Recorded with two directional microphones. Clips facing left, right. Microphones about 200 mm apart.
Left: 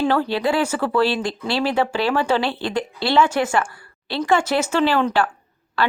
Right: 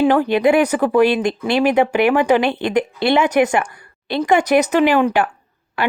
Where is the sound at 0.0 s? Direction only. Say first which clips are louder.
Right 6 dB; 15° right (ahead or behind).